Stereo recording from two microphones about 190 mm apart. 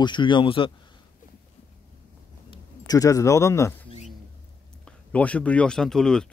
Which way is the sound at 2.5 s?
20° left (ahead or behind).